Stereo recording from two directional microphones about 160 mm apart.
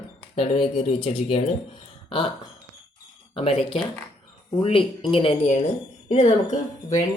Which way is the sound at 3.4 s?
35° left (ahead or behind).